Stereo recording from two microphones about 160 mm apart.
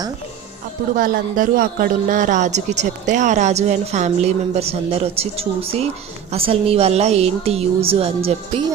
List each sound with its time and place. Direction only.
0.9 s a woman's voice: 60° right (ahead or behind); by 8.6 s 40° right (ahead or behind)